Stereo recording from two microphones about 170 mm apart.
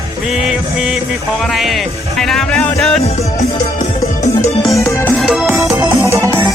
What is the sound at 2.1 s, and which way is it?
Music, centre (ahead or behind).